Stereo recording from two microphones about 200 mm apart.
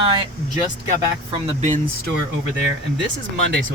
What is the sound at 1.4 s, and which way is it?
Speech, 35° right (ahead or behind).